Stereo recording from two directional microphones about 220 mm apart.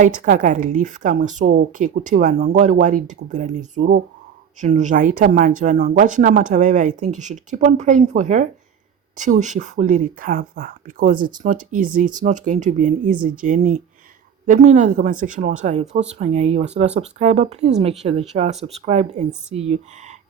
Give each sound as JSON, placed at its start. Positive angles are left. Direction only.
{"t": 0.0, "sound": "a woman's voice", "side_deg": -35}